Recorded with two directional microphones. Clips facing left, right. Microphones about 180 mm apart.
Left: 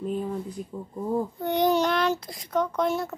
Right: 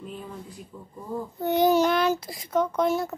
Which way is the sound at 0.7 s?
40° left (ahead or behind).